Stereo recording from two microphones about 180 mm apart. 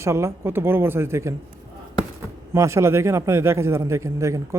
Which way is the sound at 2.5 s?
15° right (ahead or behind).